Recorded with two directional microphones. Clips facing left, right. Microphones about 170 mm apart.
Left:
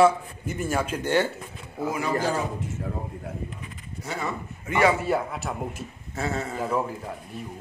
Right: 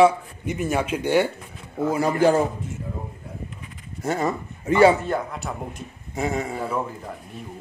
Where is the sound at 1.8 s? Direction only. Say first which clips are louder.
Right 6 dB; 35° right (ahead or behind).